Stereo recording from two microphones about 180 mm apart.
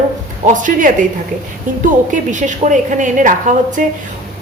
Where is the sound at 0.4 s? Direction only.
45° right (ahead or behind).